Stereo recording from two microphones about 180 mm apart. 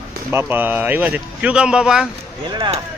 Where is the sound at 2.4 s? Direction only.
20° right (ahead or behind).